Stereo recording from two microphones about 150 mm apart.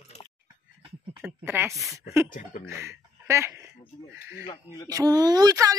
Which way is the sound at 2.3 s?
60° left (ahead or behind).